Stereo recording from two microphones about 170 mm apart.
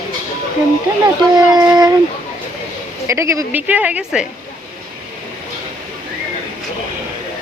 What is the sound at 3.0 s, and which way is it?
A woman's voice, 15° right (ahead or behind).